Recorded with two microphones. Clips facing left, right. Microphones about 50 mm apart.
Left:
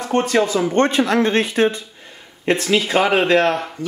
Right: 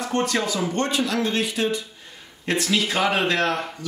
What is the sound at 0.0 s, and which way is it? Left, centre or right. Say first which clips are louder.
Speech: left 6 dB; left.